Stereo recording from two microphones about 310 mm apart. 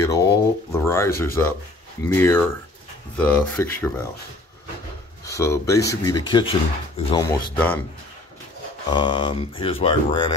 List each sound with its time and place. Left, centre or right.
0.0 s speech: centre
5.2 s speech: centre
7.2 s speech: centre
8.9 s speech: centre